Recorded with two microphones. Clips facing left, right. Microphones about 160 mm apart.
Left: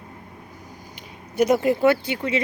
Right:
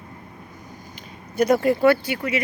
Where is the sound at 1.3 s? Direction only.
15° left (ahead or behind).